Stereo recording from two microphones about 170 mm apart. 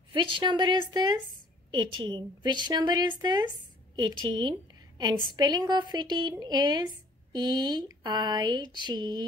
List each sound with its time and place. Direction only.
0.1 s a woman's voice: 30° right (ahead or behind)